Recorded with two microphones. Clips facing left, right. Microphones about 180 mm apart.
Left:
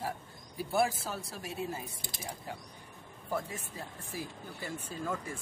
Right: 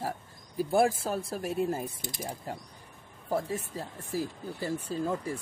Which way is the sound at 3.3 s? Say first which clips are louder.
Right 6 dB; 35° right (ahead or behind).